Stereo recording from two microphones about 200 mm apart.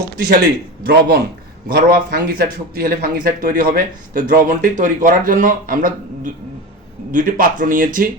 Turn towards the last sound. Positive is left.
turn(degrees=-45)  # may be behind; listen again after turning